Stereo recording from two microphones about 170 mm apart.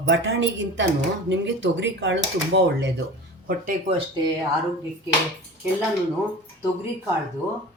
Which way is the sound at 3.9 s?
30° right (ahead or behind).